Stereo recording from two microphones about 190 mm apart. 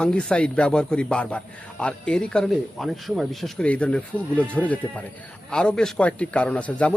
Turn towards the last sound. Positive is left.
turn(degrees=5)  # may be behind; listen again after turning